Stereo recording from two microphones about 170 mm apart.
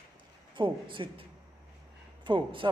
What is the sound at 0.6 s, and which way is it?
Speech, 30° right (ahead or behind).